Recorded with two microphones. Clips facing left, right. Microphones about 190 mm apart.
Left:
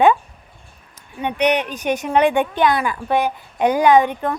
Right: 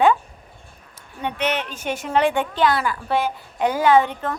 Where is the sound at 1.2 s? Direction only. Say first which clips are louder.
Left 6 dB; 15° left (ahead or behind).